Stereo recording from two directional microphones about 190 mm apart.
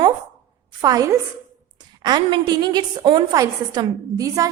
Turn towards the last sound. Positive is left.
turn(degrees=-20)  # may be behind; listen again after turning